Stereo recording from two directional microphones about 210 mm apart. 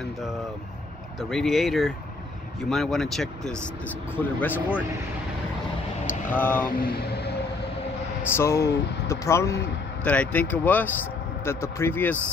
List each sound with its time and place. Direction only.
1.3 s speech: centre (ahead or behind)
6.0 s speech: 10° left (ahead or behind)
6.9 s music: 50° left (ahead or behind)
8.3 s speech: 10° left (ahead or behind)